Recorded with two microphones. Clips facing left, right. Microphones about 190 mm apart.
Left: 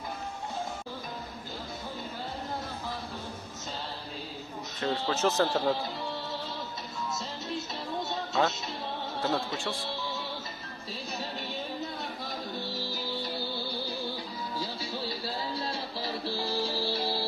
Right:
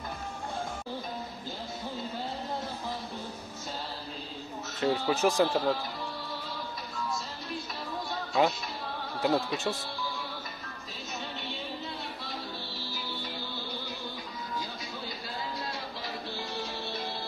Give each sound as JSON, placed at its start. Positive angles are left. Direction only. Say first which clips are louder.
{"t": 4.8, "sound": "speech", "louder": "right 2 dB", "side_deg": -15}
{"t": 9.2, "sound": "music", "louder": "right 4 dB", "side_deg": -20}
{"t": 12.7, "sound": "music", "louder": "left 4 dB", "side_deg": 40}